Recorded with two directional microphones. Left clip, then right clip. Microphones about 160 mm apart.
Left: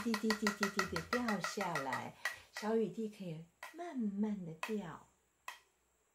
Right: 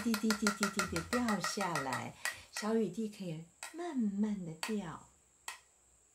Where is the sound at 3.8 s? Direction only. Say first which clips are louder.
Right 4 dB; 5° right (ahead or behind).